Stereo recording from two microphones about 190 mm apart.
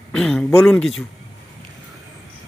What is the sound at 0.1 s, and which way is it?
Speech, 5° left (ahead or behind).